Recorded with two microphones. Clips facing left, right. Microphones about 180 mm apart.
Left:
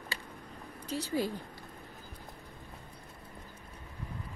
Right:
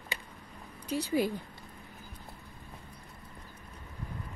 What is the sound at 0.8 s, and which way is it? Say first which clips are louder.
Speech: right 3 dB; 15° right (ahead or behind).